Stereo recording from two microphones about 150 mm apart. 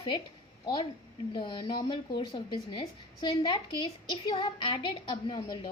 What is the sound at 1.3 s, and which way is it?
A woman's voice, 30° left (ahead or behind).